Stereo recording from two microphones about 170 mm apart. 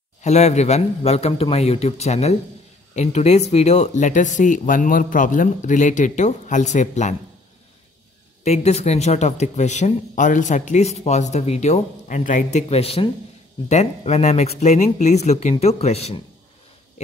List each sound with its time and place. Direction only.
0.2 s speech: 40° left (ahead or behind)
8.5 s speech: 40° left (ahead or behind)